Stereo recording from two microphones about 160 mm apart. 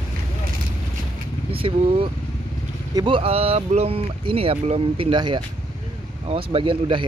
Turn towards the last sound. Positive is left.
turn(degrees=-30)  # may be behind; listen again after turning